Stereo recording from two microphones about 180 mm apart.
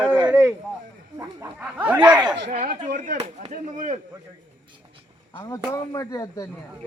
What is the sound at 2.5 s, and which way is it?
Speech, 45° right (ahead or behind).